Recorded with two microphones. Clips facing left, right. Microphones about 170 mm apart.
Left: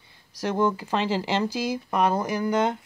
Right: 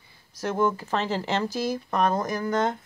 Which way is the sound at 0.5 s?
15° left (ahead or behind).